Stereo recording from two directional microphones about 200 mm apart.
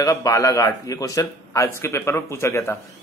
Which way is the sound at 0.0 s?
15° left (ahead or behind).